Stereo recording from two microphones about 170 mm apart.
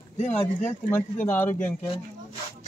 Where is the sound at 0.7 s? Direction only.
10° left (ahead or behind).